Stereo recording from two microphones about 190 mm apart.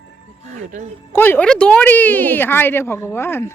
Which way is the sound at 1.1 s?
10° left (ahead or behind).